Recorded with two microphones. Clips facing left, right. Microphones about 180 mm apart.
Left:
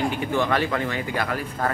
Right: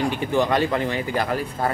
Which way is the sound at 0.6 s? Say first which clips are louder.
Right 3 dB; 30° right (ahead or behind).